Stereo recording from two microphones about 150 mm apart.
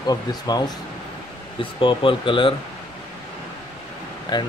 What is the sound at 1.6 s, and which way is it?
Speech, 35° left (ahead or behind).